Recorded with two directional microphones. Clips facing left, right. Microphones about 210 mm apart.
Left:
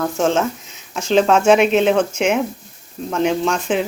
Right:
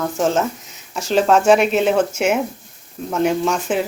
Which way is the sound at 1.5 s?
Centre (ahead or behind).